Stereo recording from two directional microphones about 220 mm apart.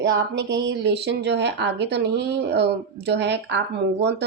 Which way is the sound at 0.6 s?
50° right (ahead or behind).